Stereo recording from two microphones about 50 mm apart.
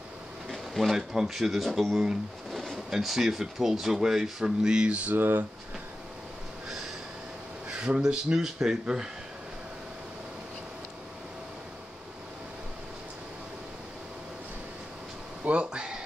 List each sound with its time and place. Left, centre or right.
0.5 s bee: centre
0.9 s speech: centre
2.0 s speech: centre
5.1 s speech: right
8.0 s speech: centre
15.4 s a sound: right